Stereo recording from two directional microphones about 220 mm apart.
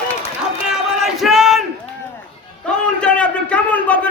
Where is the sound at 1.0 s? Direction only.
Centre (ahead or behind).